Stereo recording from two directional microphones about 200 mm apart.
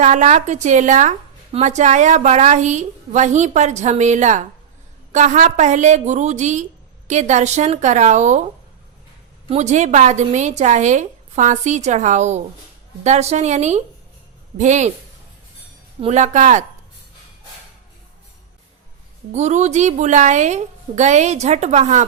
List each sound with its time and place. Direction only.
0.0 s speech: 35° right (ahead or behind)
9.5 s speech: 35° right (ahead or behind)
16.0 s speech: 35° right (ahead or behind)
19.3 s speech: 35° right (ahead or behind)